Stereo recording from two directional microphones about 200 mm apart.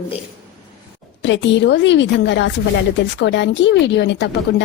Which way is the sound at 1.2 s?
65° left (ahead or behind).